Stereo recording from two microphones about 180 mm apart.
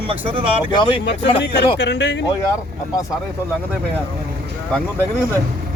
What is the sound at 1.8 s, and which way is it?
Speech, 75° left (ahead or behind).